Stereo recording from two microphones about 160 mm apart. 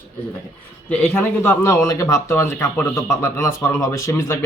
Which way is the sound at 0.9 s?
5° left (ahead or behind).